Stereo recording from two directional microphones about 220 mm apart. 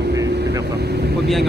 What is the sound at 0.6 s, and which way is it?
Speech, 50° right (ahead or behind).